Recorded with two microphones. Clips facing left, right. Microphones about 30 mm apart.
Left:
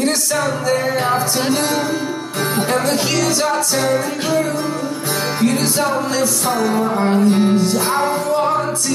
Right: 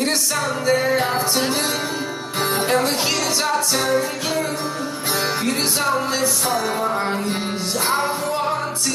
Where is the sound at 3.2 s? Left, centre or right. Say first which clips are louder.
Left 4 dB; right.